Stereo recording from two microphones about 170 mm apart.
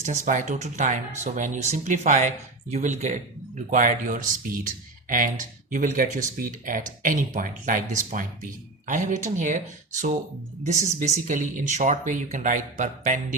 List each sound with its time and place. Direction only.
0.0 s speech: 45° right (ahead or behind)
10.7 s speech: 40° right (ahead or behind)